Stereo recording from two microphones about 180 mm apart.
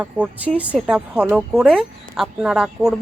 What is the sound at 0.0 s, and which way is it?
A woman's voice, 10° right (ahead or behind).